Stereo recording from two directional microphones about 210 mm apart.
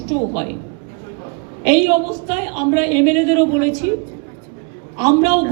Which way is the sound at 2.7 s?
35° right (ahead or behind).